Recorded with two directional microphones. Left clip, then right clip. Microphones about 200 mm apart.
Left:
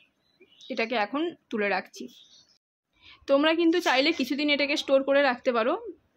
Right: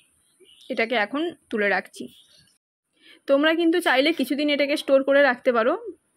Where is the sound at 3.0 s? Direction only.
10° right (ahead or behind).